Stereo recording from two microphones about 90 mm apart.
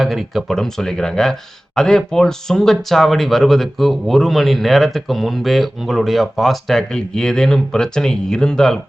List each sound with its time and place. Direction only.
0.0 s speech: centre (ahead or behind)